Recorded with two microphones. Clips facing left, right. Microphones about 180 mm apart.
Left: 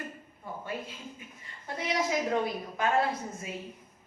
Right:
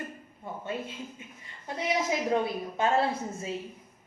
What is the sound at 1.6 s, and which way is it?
A woman's voice, 20° right (ahead or behind).